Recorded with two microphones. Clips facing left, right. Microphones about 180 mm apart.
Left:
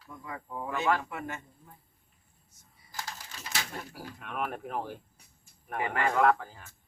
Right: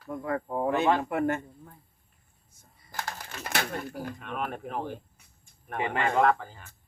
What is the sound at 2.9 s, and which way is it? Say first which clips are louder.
Typing: right 5 dB; 55° right (ahead or behind).